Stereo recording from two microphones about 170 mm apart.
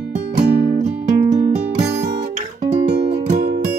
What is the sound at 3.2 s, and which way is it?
Music, 50° right (ahead or behind).